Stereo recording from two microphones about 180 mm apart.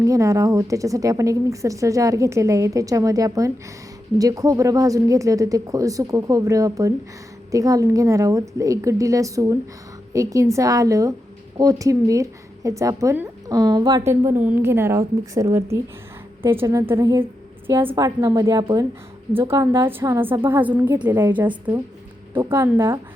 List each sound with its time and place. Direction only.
0.0 s a woman's voice: 20° right (ahead or behind)